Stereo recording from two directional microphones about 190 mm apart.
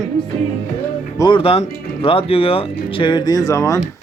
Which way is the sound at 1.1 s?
25° left (ahead or behind).